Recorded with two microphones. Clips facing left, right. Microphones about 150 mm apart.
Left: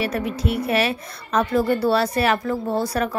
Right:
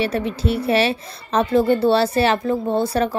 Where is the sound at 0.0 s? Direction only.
30° right (ahead or behind).